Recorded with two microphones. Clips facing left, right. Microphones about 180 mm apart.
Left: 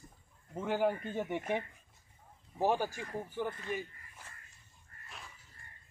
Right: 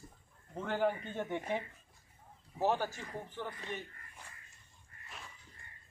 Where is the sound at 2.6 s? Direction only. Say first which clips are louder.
Left 1 dB; 10° left (ahead or behind).